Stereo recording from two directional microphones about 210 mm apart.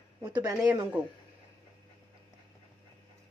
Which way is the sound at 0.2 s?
15° right (ahead or behind).